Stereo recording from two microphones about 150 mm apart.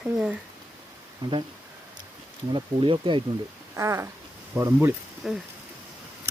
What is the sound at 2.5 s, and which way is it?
Speech, 35° right (ahead or behind).